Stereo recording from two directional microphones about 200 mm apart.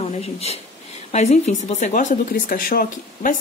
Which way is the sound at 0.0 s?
30° left (ahead or behind).